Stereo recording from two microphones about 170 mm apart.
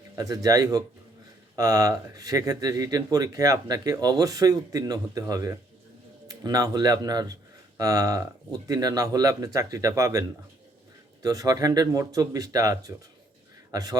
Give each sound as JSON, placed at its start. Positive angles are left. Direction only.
{"t": 0.2, "sound": "a man's voice", "side_deg": -20}